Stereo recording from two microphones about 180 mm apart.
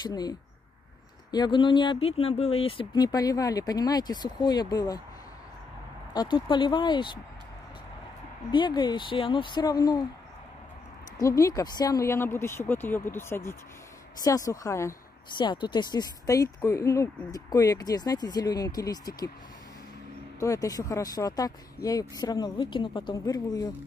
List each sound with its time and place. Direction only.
0.0 s speech: 20° left (ahead or behind)
6.1 s speech: 25° left (ahead or behind)
8.5 s speech: 25° left (ahead or behind)
11.1 s speech: 20° left (ahead or behind)
20.3 s speech: 20° left (ahead or behind)
21.8 s speech: 60° left (ahead or behind)
22.2 s speech: 20° left (ahead or behind)